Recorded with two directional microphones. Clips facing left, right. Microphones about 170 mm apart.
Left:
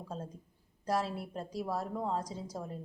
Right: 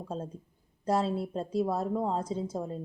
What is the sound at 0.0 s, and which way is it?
A woman's voice, 25° right (ahead or behind).